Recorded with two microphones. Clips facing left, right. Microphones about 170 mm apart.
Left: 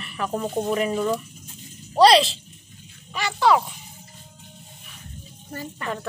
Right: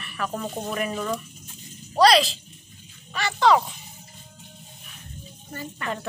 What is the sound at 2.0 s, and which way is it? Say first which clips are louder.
Speech: left 2 dB; 25° left (ahead or behind).